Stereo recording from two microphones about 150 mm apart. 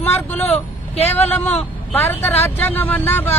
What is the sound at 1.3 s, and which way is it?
Speech, 10° left (ahead or behind).